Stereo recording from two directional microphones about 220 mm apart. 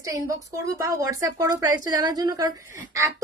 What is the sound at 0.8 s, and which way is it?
Speech, 15° right (ahead or behind).